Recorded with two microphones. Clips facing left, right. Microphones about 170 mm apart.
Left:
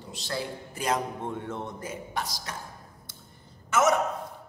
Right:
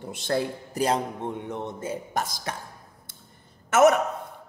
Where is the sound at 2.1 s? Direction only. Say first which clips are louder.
Right 3 dB; 50° right (ahead or behind).